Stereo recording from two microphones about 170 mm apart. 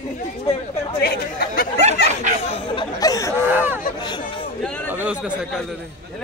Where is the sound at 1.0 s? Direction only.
60° left (ahead or behind).